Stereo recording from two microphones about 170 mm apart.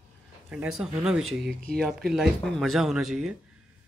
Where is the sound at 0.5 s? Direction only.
5° right (ahead or behind).